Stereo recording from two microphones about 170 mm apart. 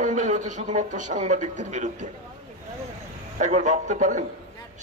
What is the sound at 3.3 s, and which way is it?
Speech, 45° right (ahead or behind).